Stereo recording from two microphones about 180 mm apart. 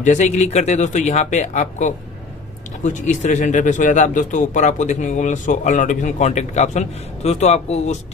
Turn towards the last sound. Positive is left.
turn(degrees=40)  # may be behind; listen again after turning